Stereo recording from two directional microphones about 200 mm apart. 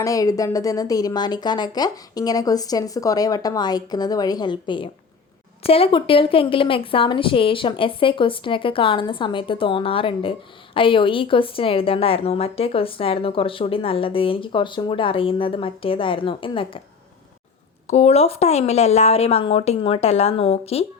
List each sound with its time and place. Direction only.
0.0 s a woman's voice: 15° left (ahead or behind)
17.8 s speech: 35° left (ahead or behind)